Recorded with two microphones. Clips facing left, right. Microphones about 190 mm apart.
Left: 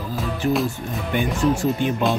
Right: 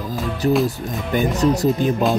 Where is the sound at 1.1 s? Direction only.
40° right (ahead or behind).